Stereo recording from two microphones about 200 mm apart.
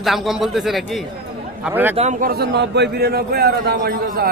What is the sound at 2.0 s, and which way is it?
Speech, 35° right (ahead or behind).